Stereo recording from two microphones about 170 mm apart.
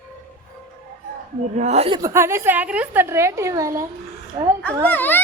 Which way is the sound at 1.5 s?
40° right (ahead or behind).